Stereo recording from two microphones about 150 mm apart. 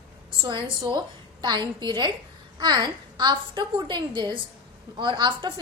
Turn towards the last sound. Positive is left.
turn(degrees=-30)  # may be behind; listen again after turning